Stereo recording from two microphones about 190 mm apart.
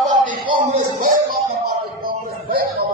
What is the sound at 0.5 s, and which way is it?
Music, 45° right (ahead or behind).